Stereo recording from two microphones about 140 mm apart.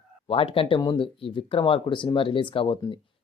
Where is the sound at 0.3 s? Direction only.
40° left (ahead or behind).